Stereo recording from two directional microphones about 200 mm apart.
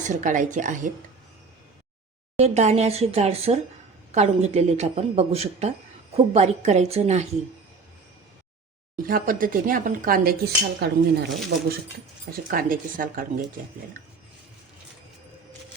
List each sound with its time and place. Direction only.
0.0 s speech: 40° right (ahead or behind)
2.4 s speech: 35° right (ahead or behind)
9.0 s speech: 45° right (ahead or behind)
12.5 s speech: 45° right (ahead or behind)